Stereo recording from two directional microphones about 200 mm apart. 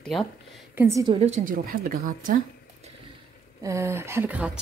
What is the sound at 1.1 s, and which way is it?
A woman's voice, 35° right (ahead or behind).